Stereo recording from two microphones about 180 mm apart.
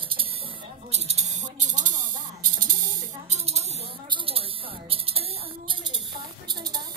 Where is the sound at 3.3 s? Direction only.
35° right (ahead or behind).